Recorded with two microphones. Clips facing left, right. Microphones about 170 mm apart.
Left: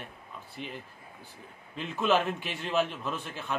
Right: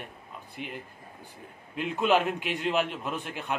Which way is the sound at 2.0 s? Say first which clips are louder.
Right 2 dB; 15° right (ahead or behind).